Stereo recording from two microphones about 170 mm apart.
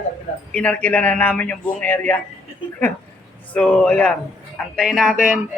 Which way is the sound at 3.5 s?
5° left (ahead or behind).